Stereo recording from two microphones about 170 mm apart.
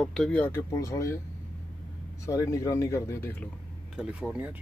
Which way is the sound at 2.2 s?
20° left (ahead or behind).